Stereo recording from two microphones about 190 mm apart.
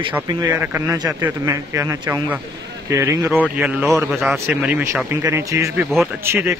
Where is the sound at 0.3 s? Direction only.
15° right (ahead or behind).